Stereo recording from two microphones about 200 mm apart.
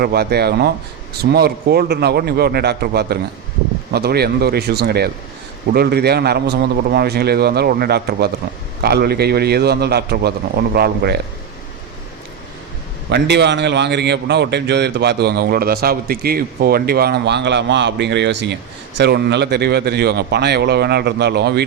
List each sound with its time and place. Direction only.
0.0 s a man's voice: 50° right (ahead or behind)
13.1 s a man's voice: 60° right (ahead or behind)